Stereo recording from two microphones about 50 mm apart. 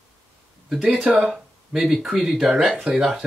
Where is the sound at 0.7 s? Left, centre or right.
Centre.